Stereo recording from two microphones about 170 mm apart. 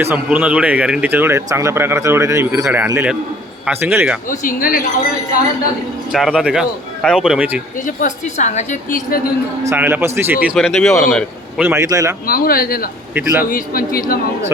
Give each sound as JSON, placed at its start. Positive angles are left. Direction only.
{"t": 0.0, "sound": "speech", "side_deg": -10}
{"t": 4.3, "sound": "speech", "side_deg": 55}
{"t": 6.1, "sound": "a man's voice", "side_deg": 0}
{"t": 7.9, "sound": "a woman's voice", "side_deg": 45}
{"t": 9.6, "sound": "speech", "side_deg": -10}
{"t": 10.4, "sound": "a man's voice", "side_deg": 0}
{"t": 11.6, "sound": "speech", "side_deg": -15}
{"t": 12.2, "sound": "speech", "side_deg": 60}
{"t": 13.1, "sound": "speech", "side_deg": -15}
{"t": 13.5, "sound": "speech", "side_deg": 55}